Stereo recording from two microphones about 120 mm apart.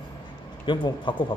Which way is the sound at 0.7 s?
40° left (ahead or behind).